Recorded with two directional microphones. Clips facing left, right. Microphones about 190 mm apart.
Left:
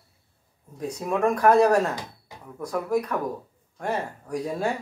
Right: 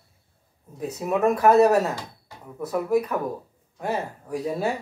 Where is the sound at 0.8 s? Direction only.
5° right (ahead or behind).